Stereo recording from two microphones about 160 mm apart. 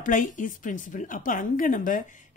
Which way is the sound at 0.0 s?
55° left (ahead or behind).